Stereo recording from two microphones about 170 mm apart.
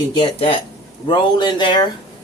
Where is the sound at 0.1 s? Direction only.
30° left (ahead or behind).